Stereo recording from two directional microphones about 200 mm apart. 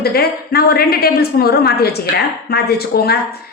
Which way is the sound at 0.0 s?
50° left (ahead or behind).